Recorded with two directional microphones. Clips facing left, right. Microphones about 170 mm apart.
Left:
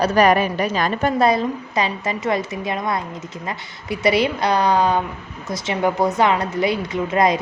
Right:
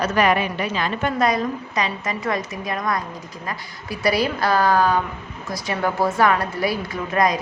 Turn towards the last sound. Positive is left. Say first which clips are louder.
# left 3 dB
turn(degrees=25)  # may be behind; listen again after turning